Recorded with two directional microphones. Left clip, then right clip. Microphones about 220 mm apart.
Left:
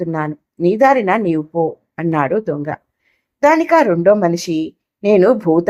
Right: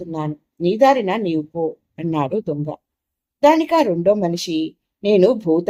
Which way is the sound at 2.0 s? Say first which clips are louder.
Left 5 dB; 15° left (ahead or behind).